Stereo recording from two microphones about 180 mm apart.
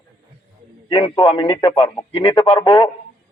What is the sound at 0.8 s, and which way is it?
A man's voice, 25° left (ahead or behind).